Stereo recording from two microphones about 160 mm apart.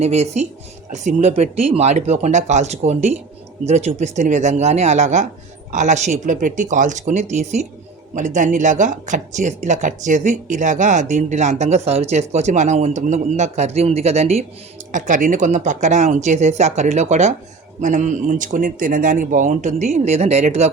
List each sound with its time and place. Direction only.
0.0 s speech: 45° right (ahead or behind)
14.9 s speech: 55° right (ahead or behind)